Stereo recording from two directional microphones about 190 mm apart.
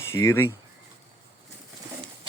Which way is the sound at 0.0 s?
15° left (ahead or behind).